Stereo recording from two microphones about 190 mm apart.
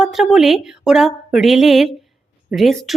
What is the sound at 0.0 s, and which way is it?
Speech, centre (ahead or behind).